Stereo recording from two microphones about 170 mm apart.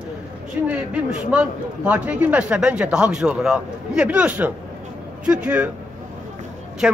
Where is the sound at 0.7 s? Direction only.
5° right (ahead or behind).